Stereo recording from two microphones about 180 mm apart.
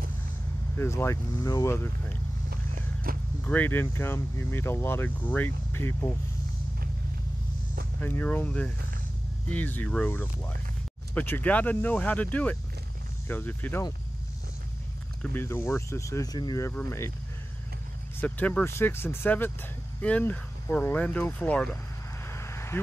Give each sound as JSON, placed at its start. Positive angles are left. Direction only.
{"t": 0.7, "sound": "speech", "side_deg": 15}
{"t": 2.5, "sound": "vehicle", "side_deg": -55}
{"t": 3.4, "sound": "speech", "side_deg": 10}
{"t": 8.0, "sound": "speech", "side_deg": 10}
{"t": 15.2, "sound": "speech", "side_deg": 10}
{"t": 18.2, "sound": "speech", "side_deg": 10}
{"t": 22.3, "sound": "a sound", "side_deg": 15}